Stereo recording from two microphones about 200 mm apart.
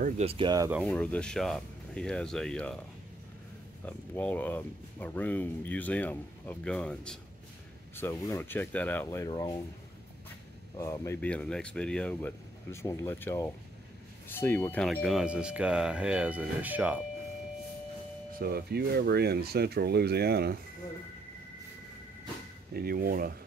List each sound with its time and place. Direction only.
0.0 s speech: 30° right (ahead or behind)
0.8 s speech: 5° left (ahead or behind)
3.8 s speech: 10° left (ahead or behind)
10.8 s speech: 15° left (ahead or behind); by 17.0 s 10° right (ahead or behind)
18.3 s speech: 50° right (ahead or behind)
22.8 s speech: 45° right (ahead or behind)